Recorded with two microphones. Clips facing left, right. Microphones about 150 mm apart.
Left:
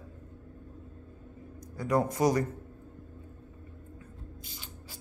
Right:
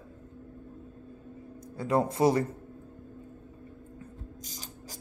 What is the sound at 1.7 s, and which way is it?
Speech, 25° right (ahead or behind).